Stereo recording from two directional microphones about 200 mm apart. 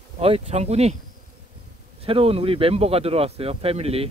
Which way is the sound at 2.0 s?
30° right (ahead or behind).